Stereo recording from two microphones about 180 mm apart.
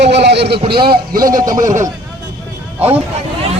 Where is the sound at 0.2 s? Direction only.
70° right (ahead or behind).